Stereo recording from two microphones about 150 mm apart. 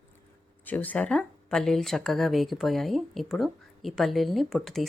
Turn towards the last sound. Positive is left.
turn(degrees=0)  # may be behind; listen again after turning